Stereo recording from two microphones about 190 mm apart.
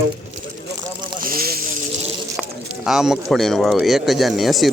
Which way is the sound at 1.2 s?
50° right (ahead or behind).